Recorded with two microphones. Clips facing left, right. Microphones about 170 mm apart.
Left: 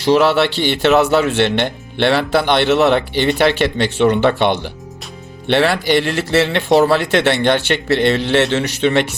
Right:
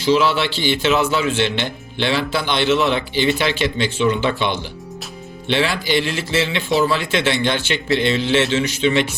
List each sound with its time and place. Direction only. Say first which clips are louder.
0.0 s a man's voice: left 4 dB; 65° left (ahead or behind)